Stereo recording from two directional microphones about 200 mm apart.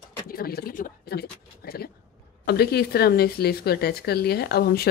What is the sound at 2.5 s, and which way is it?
Speech, 50° left (ahead or behind).